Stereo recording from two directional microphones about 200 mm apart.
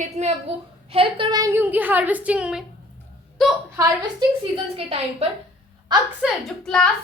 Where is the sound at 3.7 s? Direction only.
15° right (ahead or behind).